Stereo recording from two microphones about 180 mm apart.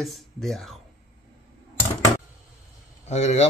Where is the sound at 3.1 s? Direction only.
35° left (ahead or behind).